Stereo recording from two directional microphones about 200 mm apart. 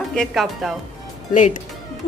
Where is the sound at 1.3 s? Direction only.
40° left (ahead or behind).